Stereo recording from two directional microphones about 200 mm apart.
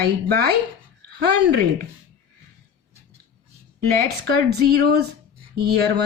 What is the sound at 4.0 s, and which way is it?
Speech, 50° right (ahead or behind).